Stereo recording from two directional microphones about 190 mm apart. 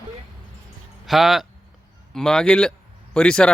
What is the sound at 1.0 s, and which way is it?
Speech, centre (ahead or behind).